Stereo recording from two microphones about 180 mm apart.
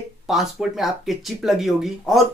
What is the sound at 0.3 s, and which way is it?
Speech, centre (ahead or behind).